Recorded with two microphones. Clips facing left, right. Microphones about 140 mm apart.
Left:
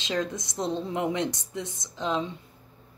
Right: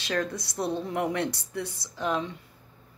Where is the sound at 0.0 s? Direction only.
20° left (ahead or behind).